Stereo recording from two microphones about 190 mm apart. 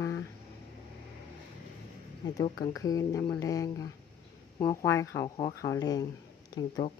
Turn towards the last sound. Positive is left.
turn(degrees=20)  # may be behind; listen again after turning